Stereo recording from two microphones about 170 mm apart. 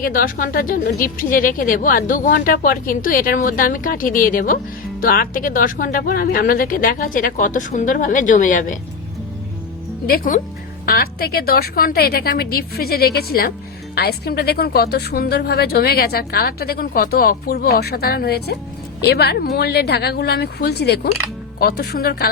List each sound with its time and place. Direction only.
0.0 s speech: 55° left (ahead or behind)
10.1 s a woman's voice: 55° left (ahead or behind)